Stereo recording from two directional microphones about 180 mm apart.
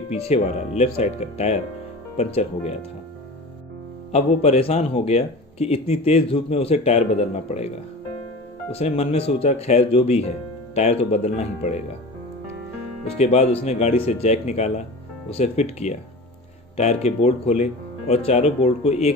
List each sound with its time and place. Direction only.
0.1 s speech: 35° left (ahead or behind)
4.1 s speech: 35° left (ahead or behind)
8.7 s speech: 35° left (ahead or behind)
13.1 s speech: 35° left (ahead or behind)